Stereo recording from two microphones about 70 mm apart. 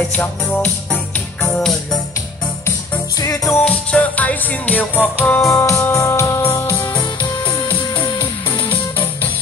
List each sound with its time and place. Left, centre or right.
0.1 s music: centre
3.2 s music: left
3.6 s music: centre
5.4 s music: left
8.5 s music: left